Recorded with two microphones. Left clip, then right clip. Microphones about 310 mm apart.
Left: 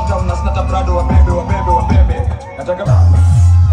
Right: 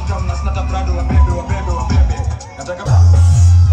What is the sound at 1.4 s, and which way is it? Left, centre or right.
Speech, centre.